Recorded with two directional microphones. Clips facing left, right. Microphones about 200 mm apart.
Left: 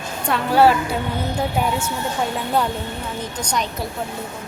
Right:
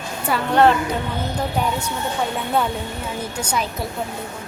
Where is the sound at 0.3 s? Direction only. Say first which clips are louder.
Left 1 dB; centre (ahead or behind).